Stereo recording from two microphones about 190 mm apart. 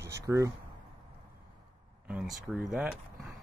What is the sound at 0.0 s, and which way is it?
Speech, 15° right (ahead or behind).